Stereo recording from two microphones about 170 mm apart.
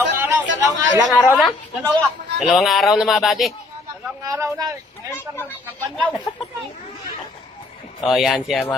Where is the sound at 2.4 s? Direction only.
Centre (ahead or behind).